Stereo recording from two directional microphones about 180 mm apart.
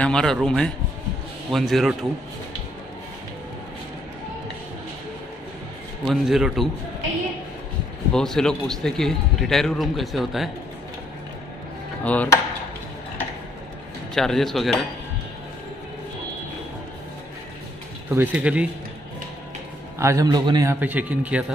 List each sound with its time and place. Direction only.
0.0 s a man's voice: 5° left (ahead or behind)
6.0 s a man's voice: centre (ahead or behind)
8.1 s a man's voice: 5° left (ahead or behind)
12.0 s speech: 10° left (ahead or behind)
14.1 s a man's voice: centre (ahead or behind)
18.1 s speech: 10° right (ahead or behind)
20.0 s a man's voice: 15° right (ahead or behind)
20.8 s speech: 10° right (ahead or behind)